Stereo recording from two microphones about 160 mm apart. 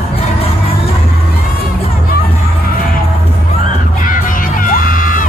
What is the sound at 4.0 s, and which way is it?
Crowd, 60° left (ahead or behind).